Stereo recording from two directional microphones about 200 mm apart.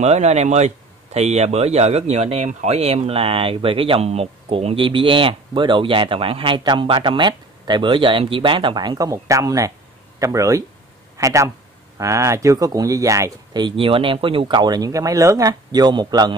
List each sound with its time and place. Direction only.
0.0 s speech: 35° right (ahead or behind)